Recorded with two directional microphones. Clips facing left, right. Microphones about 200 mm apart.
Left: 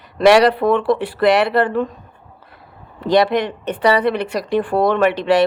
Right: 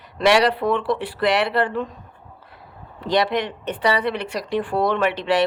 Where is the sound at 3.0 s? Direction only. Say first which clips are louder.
Left 5 dB; 50° left (ahead or behind).